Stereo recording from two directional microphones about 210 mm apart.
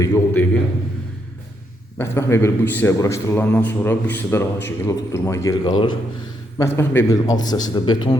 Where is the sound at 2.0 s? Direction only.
10° left (ahead or behind).